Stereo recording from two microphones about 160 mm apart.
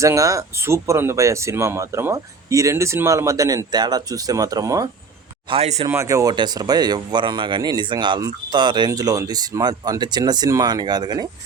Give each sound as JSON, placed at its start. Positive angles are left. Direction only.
{"t": 0.0, "sound": "speech", "side_deg": -20}
{"t": 5.5, "sound": "speech", "side_deg": -40}
{"t": 5.9, "sound": "speech", "side_deg": -20}